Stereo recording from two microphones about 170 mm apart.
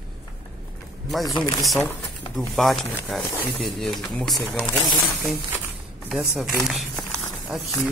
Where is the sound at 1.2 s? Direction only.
25° left (ahead or behind).